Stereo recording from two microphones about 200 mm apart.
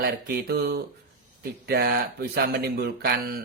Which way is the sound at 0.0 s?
55° right (ahead or behind).